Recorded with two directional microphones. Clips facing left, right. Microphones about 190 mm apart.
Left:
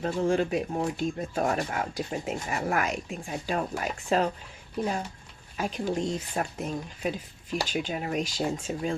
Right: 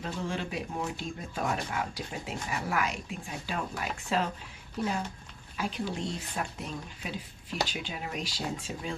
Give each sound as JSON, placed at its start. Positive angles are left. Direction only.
{"t": 0.0, "sound": "speech", "side_deg": 45}
{"t": 5.5, "sound": "speech", "side_deg": 45}